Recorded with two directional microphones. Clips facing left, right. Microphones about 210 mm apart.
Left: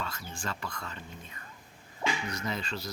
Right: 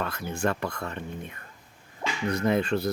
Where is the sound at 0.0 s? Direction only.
60° right (ahead or behind).